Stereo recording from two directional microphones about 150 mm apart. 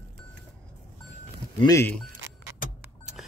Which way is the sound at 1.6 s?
20° left (ahead or behind).